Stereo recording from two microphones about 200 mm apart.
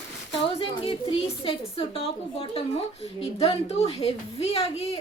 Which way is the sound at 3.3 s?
30° left (ahead or behind).